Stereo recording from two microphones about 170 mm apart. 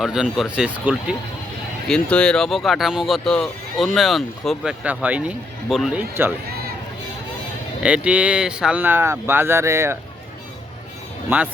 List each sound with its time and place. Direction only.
0.0 s speech: 5° right (ahead or behind)
1.9 s speech: 5° left (ahead or behind); by 6.3 s 10° right (ahead or behind)
7.8 s speech: 5° right (ahead or behind)
11.3 s speech: 10° right (ahead or behind)